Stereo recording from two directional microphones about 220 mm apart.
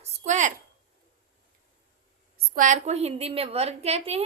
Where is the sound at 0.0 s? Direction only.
35° right (ahead or behind).